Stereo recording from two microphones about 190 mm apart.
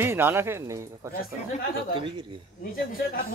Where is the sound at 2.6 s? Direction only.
50° left (ahead or behind).